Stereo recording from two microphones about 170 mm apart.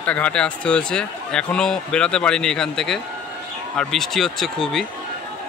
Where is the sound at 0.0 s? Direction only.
5° left (ahead or behind).